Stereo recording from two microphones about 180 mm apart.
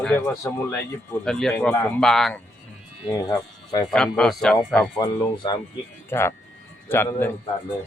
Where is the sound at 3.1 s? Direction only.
20° left (ahead or behind).